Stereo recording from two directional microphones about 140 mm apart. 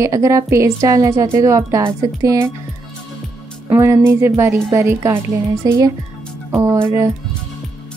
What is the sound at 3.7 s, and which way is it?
A woman's voice, 15° right (ahead or behind).